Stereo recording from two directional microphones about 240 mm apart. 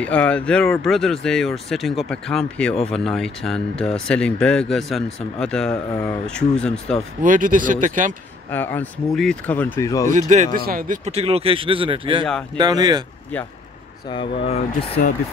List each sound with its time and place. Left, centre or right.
0.0 s speech: centre
7.2 s speech: right
8.5 s speech: centre
10.1 s speech: right
14.0 s speech: left